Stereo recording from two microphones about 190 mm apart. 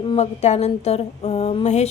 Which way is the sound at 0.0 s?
30° left (ahead or behind).